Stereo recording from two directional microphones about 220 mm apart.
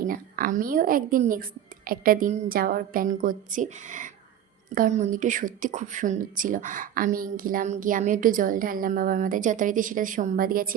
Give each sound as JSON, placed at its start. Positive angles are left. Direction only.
{"t": 0.0, "sound": "a woman's voice", "side_deg": -40}